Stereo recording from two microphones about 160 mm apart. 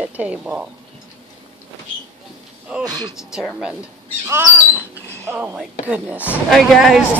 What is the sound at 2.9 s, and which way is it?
Speech, 25° right (ahead or behind).